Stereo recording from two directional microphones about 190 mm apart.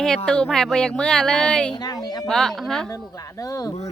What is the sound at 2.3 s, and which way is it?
Speech, 5° left (ahead or behind).